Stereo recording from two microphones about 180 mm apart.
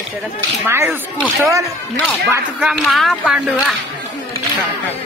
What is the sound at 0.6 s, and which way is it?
Speech, 15° right (ahead or behind).